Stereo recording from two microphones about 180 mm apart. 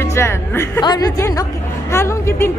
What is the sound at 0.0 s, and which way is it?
Speech, 15° left (ahead or behind).